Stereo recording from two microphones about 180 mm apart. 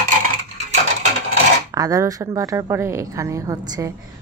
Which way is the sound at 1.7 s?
20° right (ahead or behind).